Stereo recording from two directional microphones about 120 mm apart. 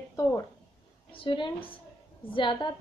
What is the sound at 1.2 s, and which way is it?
A woman's voice, 45° left (ahead or behind).